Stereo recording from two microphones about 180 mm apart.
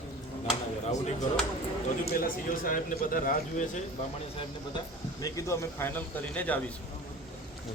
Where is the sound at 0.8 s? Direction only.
40° left (ahead or behind).